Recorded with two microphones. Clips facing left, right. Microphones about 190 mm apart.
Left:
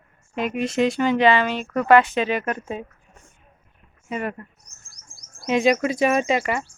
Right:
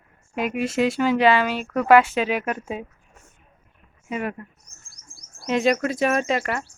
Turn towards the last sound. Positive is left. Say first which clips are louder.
# left 2 dB
turn(degrees=5)  # may be behind; listen again after turning